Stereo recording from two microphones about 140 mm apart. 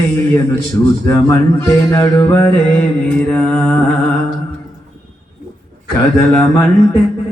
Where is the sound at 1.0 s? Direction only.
15° left (ahead or behind).